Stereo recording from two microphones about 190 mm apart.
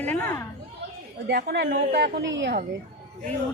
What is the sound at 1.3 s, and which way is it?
A woman's voice, 60° right (ahead or behind).